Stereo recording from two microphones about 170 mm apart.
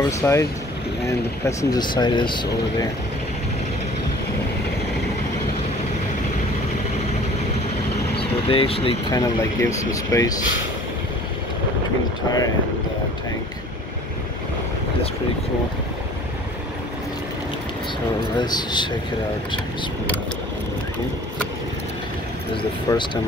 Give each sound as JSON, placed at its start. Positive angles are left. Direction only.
{"t": 0.0, "sound": "speech", "side_deg": 20}
{"t": 8.5, "sound": "speech", "side_deg": 35}
{"t": 9.1, "sound": "speech", "side_deg": 20}
{"t": 18.3, "sound": "speech", "side_deg": 25}
{"t": 22.9, "sound": "speech", "side_deg": 20}